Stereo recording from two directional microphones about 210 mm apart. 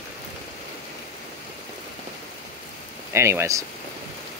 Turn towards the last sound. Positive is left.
turn(degrees=-15)  # may be behind; listen again after turning